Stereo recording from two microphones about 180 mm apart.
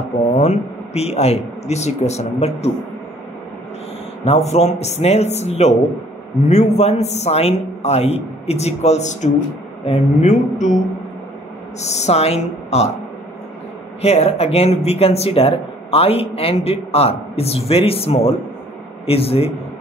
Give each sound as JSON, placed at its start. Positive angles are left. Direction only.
{"t": 0.3, "sound": "speech", "side_deg": 35}
{"t": 4.2, "sound": "speech", "side_deg": 35}
{"t": 11.8, "sound": "speech", "side_deg": 40}
{"t": 14.0, "sound": "speech", "side_deg": 35}